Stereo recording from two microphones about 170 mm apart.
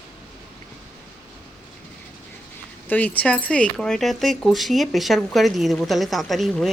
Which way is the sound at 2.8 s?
10° left (ahead or behind).